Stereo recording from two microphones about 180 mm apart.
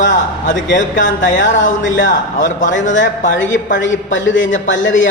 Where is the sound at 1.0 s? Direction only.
90° left.